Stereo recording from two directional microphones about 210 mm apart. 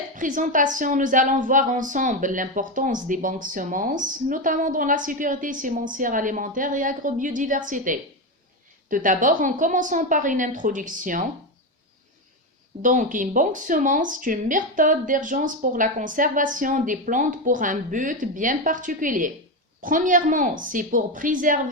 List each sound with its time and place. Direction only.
0.2 s a woman's voice: 40° right (ahead or behind)
12.8 s a woman's voice: 40° right (ahead or behind)